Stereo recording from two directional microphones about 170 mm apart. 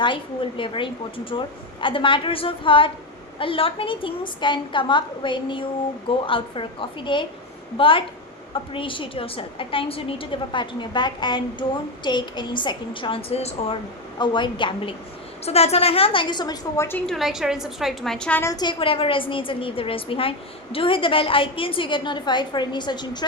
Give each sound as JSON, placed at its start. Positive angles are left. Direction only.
{"t": 0.0, "sound": "a woman's voice", "side_deg": 30}
{"t": 15.4, "sound": "a woman's voice", "side_deg": 40}
{"t": 17.1, "sound": "a woman's voice", "side_deg": 0}
{"t": 18.5, "sound": "a woman's voice", "side_deg": 25}